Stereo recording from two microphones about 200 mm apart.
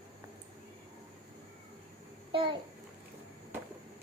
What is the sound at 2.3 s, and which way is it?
Babbling, 25° right (ahead or behind).